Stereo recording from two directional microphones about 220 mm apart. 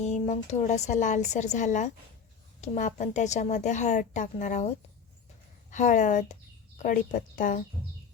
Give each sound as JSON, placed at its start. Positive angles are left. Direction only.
{"t": 0.0, "sound": "a woman's voice", "side_deg": 30}
{"t": 5.7, "sound": "a woman's voice", "side_deg": 35}